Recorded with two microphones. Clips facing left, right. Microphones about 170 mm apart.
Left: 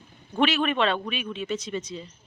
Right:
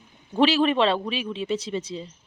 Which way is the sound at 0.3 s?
30° right (ahead or behind).